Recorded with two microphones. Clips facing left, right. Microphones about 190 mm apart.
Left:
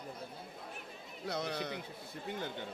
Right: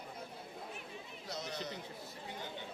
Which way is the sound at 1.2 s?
60° left (ahead or behind).